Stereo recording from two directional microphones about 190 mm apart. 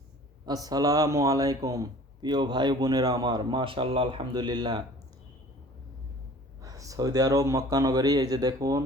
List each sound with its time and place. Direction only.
0.4 s a man's voice: 20° right (ahead or behind)
6.6 s a man's voice: 15° right (ahead or behind)